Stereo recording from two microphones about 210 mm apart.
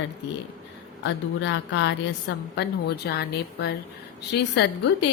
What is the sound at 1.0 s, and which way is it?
A woman's voice, 60° left (ahead or behind).